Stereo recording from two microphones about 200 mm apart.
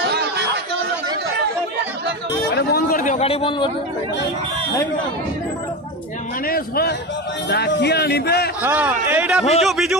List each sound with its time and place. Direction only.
0.0 s chatter: 55° right (ahead or behind)
2.5 s speech: 50° left (ahead or behind); by 3.7 s 25° left (ahead or behind)
6.4 s a man's voice: 50° left (ahead or behind)
8.6 s speech: 10° right (ahead or behind)